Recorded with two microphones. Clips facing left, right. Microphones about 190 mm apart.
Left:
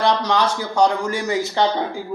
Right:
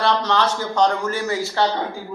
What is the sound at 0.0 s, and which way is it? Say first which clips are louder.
A man's voice: left 1 dB; 10° left (ahead or behind).